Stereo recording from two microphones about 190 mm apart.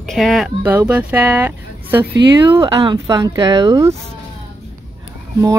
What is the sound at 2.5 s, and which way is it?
Speech, 25° right (ahead or behind).